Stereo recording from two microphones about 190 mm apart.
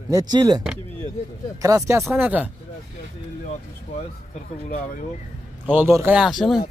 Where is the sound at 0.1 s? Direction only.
20° right (ahead or behind).